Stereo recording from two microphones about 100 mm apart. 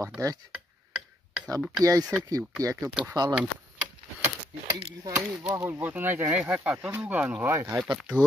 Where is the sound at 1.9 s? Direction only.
35° right (ahead or behind).